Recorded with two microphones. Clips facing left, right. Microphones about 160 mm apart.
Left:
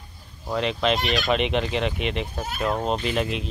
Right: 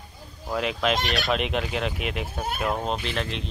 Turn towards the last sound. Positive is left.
turn(degrees=5)  # may be behind; listen again after turning